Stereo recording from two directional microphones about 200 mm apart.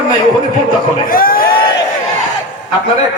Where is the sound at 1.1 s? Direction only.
45° left (ahead or behind).